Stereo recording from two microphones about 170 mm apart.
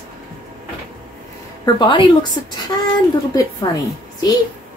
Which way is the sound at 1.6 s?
30° left (ahead or behind).